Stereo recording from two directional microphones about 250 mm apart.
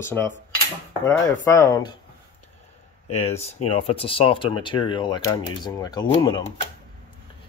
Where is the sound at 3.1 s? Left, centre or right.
Left.